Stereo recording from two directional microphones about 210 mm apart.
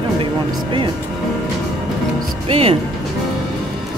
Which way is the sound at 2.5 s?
25° right (ahead or behind).